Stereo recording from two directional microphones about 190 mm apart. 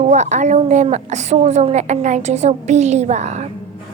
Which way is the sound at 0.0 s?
40° right (ahead or behind).